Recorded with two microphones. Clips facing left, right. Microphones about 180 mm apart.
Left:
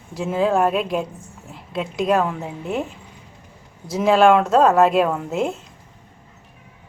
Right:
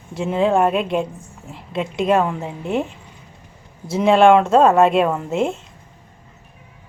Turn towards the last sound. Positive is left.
turn(degrees=0)  # may be behind; listen again after turning